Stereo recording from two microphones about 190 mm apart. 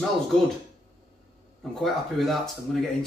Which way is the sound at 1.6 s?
Centre (ahead or behind).